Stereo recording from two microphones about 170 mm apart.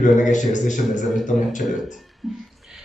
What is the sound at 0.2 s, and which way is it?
Speech, 45° left (ahead or behind).